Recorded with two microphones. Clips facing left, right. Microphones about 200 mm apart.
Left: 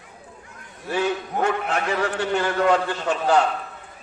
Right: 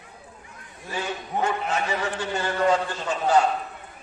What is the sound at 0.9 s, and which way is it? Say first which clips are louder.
A man's voice: left 6 dB; 65° left (ahead or behind).